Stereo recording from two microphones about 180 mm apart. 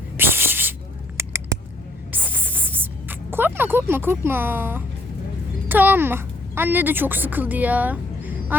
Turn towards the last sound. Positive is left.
turn(degrees=-10)  # may be behind; listen again after turning